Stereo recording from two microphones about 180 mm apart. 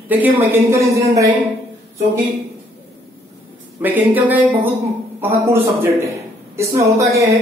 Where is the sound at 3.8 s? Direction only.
10° right (ahead or behind).